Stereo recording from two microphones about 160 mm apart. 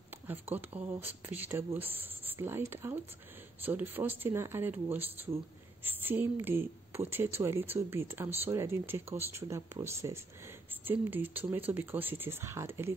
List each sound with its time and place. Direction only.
0.3 s a woman's voice: 10° right (ahead or behind)